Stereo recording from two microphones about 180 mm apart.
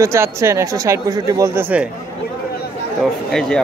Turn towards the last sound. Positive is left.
turn(degrees=0)  # may be behind; listen again after turning